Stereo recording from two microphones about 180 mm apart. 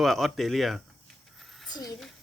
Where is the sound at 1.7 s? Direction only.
20° left (ahead or behind).